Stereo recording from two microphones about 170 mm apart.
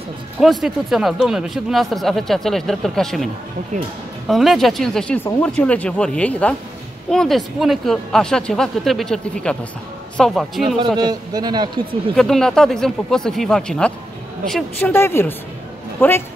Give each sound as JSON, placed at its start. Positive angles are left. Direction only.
{"t": 0.4, "sound": "speech", "side_deg": 0}
{"t": 4.3, "sound": "speech", "side_deg": 0}
{"t": 11.0, "sound": "speech", "side_deg": -25}
{"t": 12.2, "sound": "speech", "side_deg": 5}